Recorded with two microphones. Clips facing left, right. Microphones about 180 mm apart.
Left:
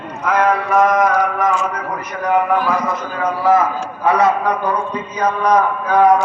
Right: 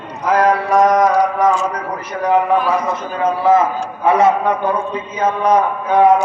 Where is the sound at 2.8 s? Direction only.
25° right (ahead or behind).